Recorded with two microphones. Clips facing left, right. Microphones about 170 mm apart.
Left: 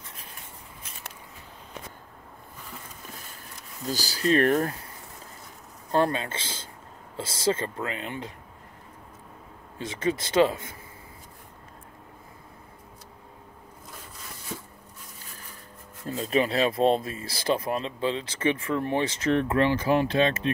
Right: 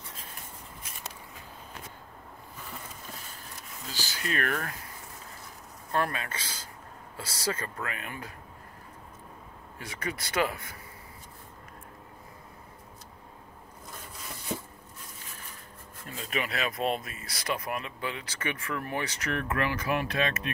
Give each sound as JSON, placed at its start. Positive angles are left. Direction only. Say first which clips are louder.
{"t": 3.8, "sound": "speech", "louder": "left 10 dB", "side_deg": 40}
{"t": 5.9, "sound": "speech", "louder": "left 6 dB", "side_deg": 30}
{"t": 9.8, "sound": "speech", "louder": "left 9 dB", "side_deg": 25}
{"t": 16.1, "sound": "speech", "louder": "left 9 dB", "side_deg": 30}